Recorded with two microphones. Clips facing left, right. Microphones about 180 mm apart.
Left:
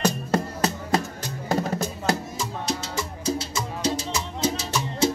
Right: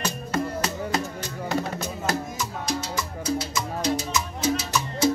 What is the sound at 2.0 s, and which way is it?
Music, 25° left (ahead or behind).